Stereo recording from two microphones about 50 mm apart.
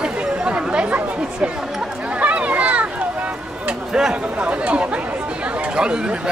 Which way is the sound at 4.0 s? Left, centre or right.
Centre.